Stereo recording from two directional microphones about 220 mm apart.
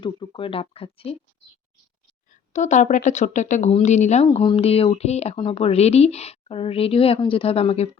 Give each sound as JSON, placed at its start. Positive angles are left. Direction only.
{"t": 0.0, "sound": "speech", "side_deg": 20}
{"t": 2.5, "sound": "speech", "side_deg": 35}